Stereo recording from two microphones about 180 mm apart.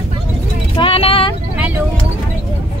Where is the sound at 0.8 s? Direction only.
30° left (ahead or behind).